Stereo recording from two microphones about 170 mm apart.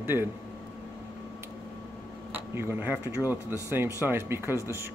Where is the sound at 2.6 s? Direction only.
10° right (ahead or behind).